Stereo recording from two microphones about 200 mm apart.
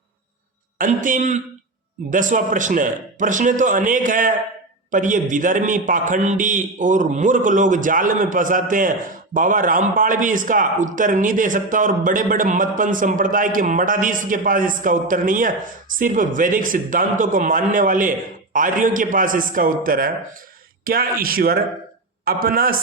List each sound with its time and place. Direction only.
0.8 s a man's voice: 40° right (ahead or behind)